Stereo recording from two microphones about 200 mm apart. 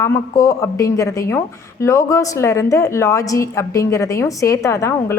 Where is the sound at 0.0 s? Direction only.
15° left (ahead or behind).